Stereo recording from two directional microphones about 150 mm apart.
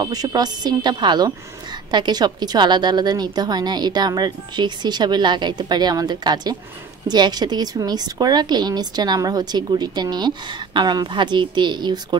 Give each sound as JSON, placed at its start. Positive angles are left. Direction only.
{"t": 0.0, "sound": "speech", "side_deg": -25}